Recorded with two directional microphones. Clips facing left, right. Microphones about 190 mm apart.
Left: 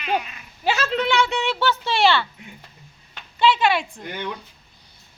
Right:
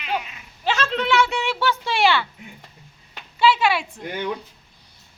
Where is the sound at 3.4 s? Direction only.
5° right (ahead or behind).